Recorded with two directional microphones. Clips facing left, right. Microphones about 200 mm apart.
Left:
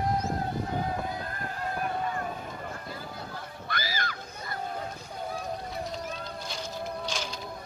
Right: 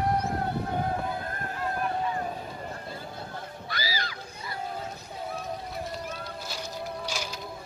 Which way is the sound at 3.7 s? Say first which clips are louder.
Left 1 dB; 50° left (ahead or behind).